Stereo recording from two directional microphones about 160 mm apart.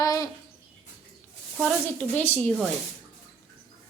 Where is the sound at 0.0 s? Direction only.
25° left (ahead or behind).